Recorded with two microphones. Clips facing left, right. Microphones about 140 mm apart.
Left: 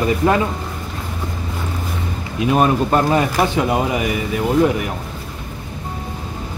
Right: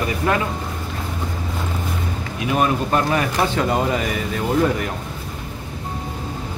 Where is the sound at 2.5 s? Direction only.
30° left (ahead or behind).